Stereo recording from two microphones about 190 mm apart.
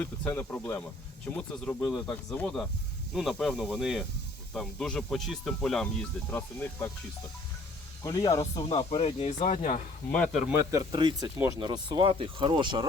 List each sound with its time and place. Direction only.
0.0 s speech: 10° left (ahead or behind)
8.0 s speech: 20° left (ahead or behind)
8.7 s speech: 30° left (ahead or behind)
10.1 s speech: 5° left (ahead or behind)
10.7 s speech: 20° right (ahead or behind)